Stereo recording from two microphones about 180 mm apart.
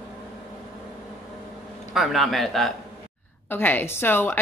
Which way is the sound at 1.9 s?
Centre (ahead or behind).